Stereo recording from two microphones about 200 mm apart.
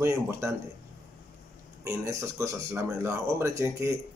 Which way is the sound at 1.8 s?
15° right (ahead or behind).